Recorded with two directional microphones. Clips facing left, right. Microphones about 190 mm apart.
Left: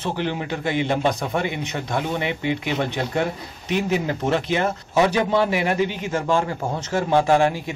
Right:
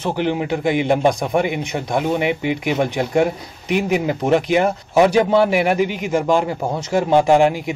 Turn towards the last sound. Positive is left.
turn(degrees=-15)  # may be behind; listen again after turning